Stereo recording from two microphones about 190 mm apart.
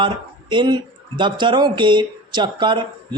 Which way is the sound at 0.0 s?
25° right (ahead or behind).